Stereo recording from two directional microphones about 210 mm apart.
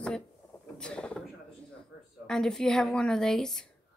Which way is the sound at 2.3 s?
Centre (ahead or behind).